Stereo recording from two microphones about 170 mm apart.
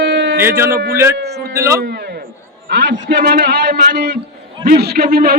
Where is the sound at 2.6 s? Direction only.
90° right; by 5.4 s 65° right (ahead or behind).